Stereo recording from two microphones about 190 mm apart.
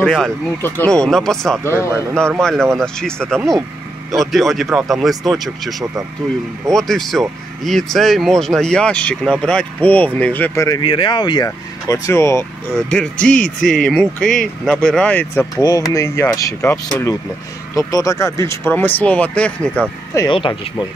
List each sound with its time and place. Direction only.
0.0 s speech: 5° left (ahead or behind)
1.6 s speech: 15° left (ahead or behind)
10.8 s speech: 25° left (ahead or behind)
12.7 s speech: 5° left (ahead or behind)
20.2 s speech: 25° left (ahead or behind)